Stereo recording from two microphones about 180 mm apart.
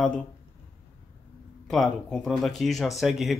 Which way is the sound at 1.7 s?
Centre (ahead or behind).